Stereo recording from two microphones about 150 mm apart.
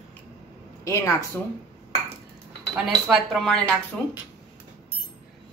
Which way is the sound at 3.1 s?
Centre (ahead or behind).